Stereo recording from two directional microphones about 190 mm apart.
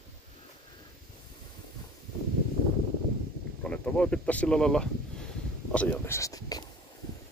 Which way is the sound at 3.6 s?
5° left (ahead or behind).